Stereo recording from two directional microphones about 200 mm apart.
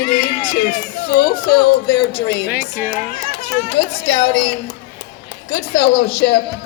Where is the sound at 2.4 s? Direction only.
10° right (ahead or behind).